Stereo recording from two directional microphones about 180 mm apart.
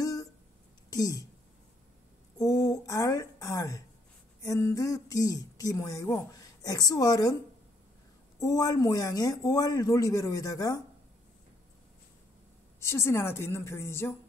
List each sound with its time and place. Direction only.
0.0 s a sound: 20° left (ahead or behind)
0.8 s speech: 20° left (ahead or behind)
2.3 s speech: 20° left (ahead or behind)
8.4 s speech: 20° left (ahead or behind)
12.8 s a woman's voice: 15° left (ahead or behind)